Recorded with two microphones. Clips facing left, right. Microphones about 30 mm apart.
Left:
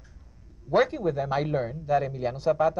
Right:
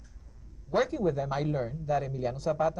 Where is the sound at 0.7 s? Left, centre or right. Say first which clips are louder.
Left 4 dB; left.